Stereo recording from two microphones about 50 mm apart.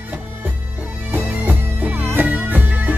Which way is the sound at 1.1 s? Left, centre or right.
Right.